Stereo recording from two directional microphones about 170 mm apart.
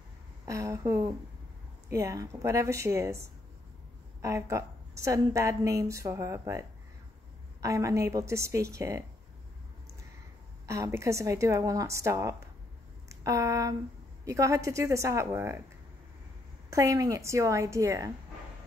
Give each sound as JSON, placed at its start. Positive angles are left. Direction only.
{"t": 0.5, "sound": "a woman's voice", "side_deg": -20}
{"t": 7.6, "sound": "a woman's voice", "side_deg": -20}
{"t": 10.7, "sound": "a woman's voice", "side_deg": -15}
{"t": 16.7, "sound": "a woman's voice", "side_deg": -20}